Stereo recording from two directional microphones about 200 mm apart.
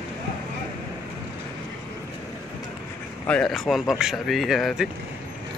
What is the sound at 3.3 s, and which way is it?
Speech, 5° left (ahead or behind).